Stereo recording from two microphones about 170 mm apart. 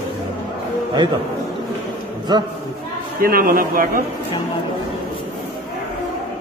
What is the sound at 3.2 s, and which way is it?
Speech, 60° right (ahead or behind).